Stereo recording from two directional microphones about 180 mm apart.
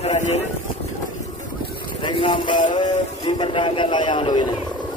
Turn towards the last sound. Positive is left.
turn(degrees=25)  # may be behind; listen again after turning